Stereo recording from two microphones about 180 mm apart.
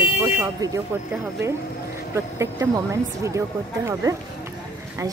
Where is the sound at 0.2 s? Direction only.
15° right (ahead or behind).